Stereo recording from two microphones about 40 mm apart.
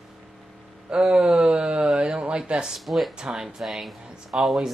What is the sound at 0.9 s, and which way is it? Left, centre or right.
Speech, right.